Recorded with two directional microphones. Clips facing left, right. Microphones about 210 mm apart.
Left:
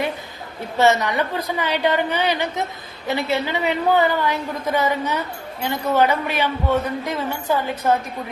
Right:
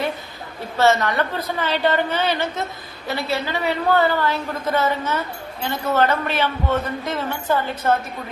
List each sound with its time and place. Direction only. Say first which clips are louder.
0.8 s a man's voice: even; 15° left (ahead or behind)